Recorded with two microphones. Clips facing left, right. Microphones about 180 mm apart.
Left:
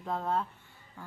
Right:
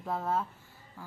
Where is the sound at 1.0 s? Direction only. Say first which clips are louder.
Even; 5° right (ahead or behind).